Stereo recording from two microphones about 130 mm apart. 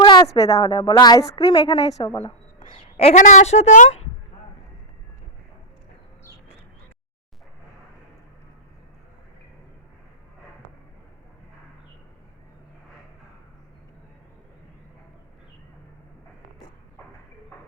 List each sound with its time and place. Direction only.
0.0 s a woman's voice: 35° left (ahead or behind)
2.1 s a sound: 45° left (ahead or behind)
3.0 s a woman's voice: 60° left (ahead or behind)